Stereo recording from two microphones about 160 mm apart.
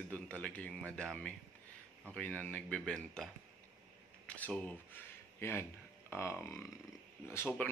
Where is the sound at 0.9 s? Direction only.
5° left (ahead or behind).